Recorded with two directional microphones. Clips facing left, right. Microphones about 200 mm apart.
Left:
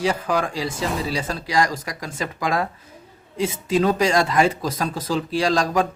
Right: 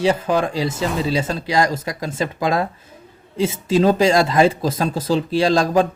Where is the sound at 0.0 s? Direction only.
25° right (ahead or behind).